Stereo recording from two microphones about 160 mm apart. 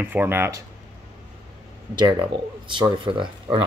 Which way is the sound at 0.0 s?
10° right (ahead or behind).